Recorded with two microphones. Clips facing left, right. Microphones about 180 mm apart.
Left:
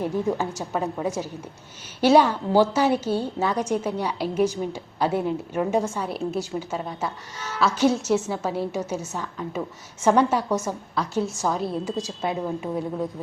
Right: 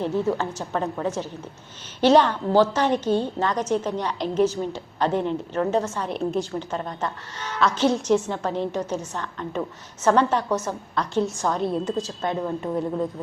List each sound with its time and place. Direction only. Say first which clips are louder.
0.0 s a woman's voice: right 1 dB; 10° left (ahead or behind)